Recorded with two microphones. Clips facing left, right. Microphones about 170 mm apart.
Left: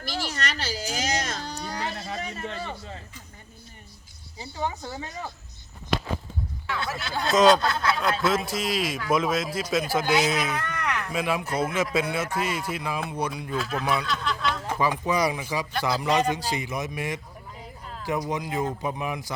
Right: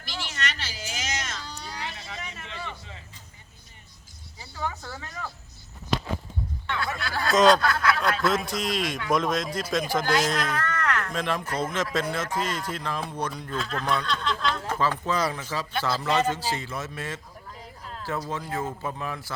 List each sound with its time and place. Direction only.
0.0 s a sound: 40° left (ahead or behind)
1.4 s baby cry: 45° left (ahead or behind)
4.5 s speech: 20° left (ahead or behind)
7.3 s speech: centre (ahead or behind)
7.6 s speech: 25° left (ahead or behind)
8.2 s a man's voice: centre (ahead or behind)